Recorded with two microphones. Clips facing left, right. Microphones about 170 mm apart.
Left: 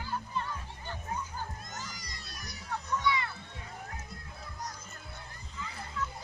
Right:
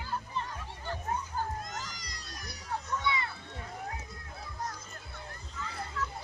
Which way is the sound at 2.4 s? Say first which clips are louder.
Right 1 dB; 30° right (ahead or behind).